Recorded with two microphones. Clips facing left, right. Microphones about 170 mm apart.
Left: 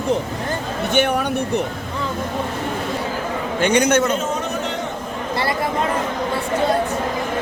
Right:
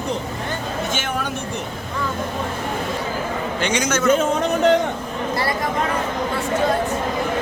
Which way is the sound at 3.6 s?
55° left (ahead or behind).